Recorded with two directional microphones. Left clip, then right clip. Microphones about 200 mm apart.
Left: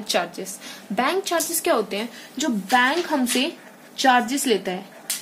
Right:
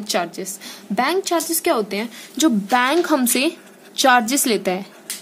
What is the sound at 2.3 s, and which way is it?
A woman's voice, 50° right (ahead or behind).